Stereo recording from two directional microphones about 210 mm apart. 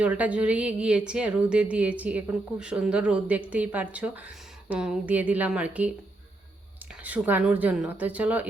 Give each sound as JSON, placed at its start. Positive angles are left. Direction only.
{"t": 0.0, "sound": "speech", "side_deg": -5}
{"t": 7.0, "sound": "speech", "side_deg": -10}